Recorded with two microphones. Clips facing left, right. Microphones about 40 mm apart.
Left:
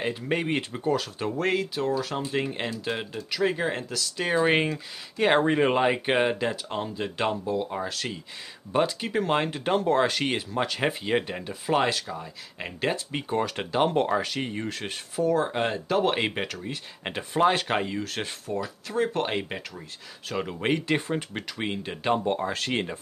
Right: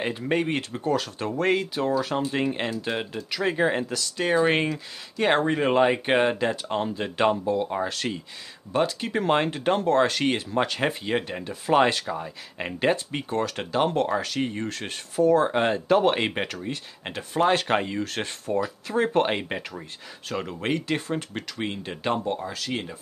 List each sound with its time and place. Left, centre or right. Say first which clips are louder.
0.0 s speech: right 2 dB; centre
8.7 s speech: even; centre
11.8 s speech: right 4 dB; centre
13.1 s speech: even; centre
17.0 s speech: left 1 dB; centre
20.2 s speech: left 1 dB; centre
22.2 s speech: left 2 dB; left